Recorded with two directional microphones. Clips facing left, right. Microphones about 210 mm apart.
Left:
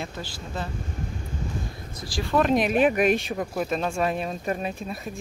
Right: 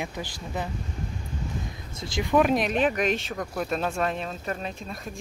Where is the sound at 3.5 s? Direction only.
Centre (ahead or behind).